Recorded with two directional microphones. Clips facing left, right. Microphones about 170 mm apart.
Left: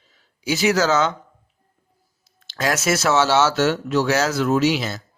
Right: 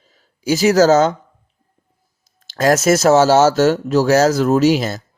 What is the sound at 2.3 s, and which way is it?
Speech, 45° right (ahead or behind).